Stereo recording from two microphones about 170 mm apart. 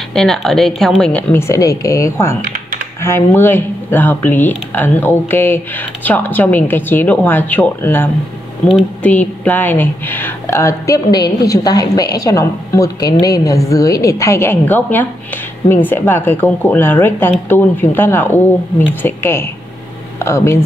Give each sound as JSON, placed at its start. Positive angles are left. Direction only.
{"t": 0.1, "sound": "a woman's voice", "side_deg": 5}